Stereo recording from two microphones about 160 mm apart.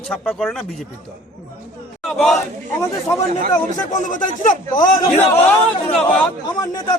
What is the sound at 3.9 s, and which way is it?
Speech, 55° left (ahead or behind).